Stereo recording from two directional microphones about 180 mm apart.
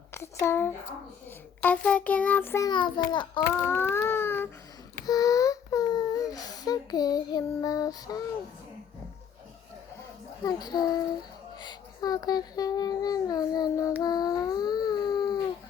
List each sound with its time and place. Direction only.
0.1 s speech: 15° left (ahead or behind)
1.6 s child singing: 5° left (ahead or behind)
2.6 s a child's voice: 25° left (ahead or behind)
3.6 s a sound: 10° left (ahead or behind)
10.4 s a child's voice: 20° left (ahead or behind)